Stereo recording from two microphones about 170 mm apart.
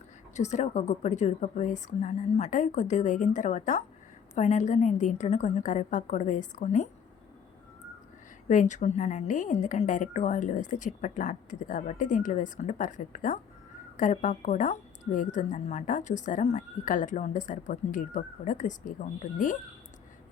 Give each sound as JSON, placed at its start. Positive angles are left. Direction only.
{"t": 0.3, "sound": "speech", "side_deg": 45}
{"t": 8.4, "sound": "speech", "side_deg": 45}